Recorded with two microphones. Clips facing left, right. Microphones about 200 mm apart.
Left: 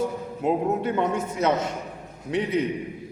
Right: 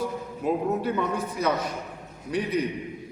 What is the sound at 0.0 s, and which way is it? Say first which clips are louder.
A man's voice: left 3 dB; 25° left (ahead or behind).